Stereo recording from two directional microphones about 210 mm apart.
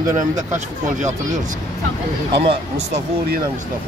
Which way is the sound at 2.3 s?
25° right (ahead or behind).